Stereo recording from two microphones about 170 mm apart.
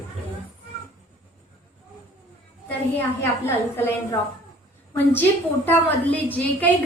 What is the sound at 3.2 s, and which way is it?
A woman's voice, 15° left (ahead or behind).